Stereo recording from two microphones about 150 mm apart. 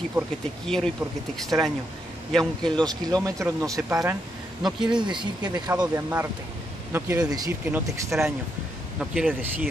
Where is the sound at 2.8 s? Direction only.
25° right (ahead or behind).